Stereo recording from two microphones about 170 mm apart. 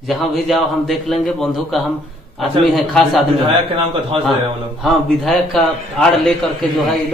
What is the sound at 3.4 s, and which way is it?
Speech, 35° right (ahead or behind).